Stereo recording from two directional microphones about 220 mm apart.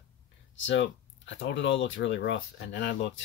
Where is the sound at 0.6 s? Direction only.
55° left (ahead or behind).